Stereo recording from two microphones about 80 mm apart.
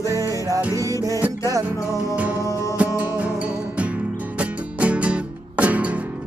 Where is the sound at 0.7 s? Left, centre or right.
Right.